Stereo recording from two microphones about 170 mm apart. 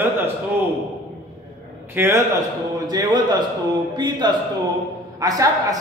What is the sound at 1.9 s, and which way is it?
A man's voice, 15° right (ahead or behind).